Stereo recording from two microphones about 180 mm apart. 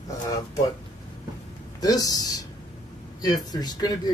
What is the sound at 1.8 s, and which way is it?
Speech, 20° left (ahead or behind).